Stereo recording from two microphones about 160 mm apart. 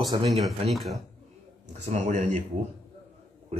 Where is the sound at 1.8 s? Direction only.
45° right (ahead or behind).